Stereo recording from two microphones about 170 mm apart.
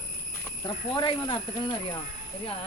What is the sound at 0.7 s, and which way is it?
Speech, 30° left (ahead or behind).